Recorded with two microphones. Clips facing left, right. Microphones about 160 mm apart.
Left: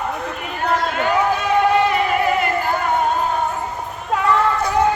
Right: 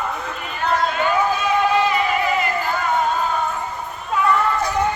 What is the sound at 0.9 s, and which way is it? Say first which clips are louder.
Run: left 1 dB; 70° left (ahead or behind).